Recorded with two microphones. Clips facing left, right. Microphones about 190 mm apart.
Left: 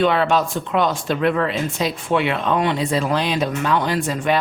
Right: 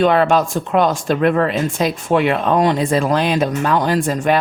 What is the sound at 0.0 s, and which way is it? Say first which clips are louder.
Speech: right 4 dB; 45° right (ahead or behind).